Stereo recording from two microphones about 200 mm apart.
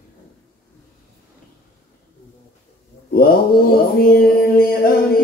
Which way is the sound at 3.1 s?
50° left (ahead or behind).